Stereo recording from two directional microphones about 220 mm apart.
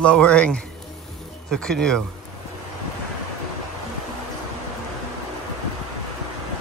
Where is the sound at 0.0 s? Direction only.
5° left (ahead or behind).